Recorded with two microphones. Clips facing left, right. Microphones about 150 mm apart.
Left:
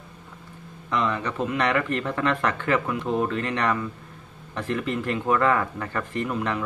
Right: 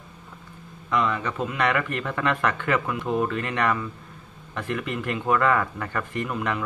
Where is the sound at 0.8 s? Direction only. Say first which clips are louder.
Right 1 dB; 35° left (ahead or behind).